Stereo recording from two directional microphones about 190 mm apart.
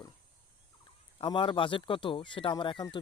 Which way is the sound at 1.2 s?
25° left (ahead or behind).